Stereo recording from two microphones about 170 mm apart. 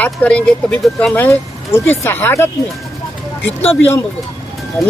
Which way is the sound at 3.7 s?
10° left (ahead or behind).